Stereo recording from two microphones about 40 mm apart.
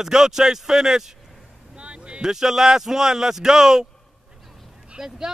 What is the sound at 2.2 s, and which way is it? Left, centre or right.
Speech, centre.